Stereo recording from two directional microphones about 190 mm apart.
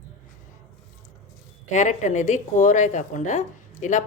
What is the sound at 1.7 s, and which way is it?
A woman's voice, 40° left (ahead or behind).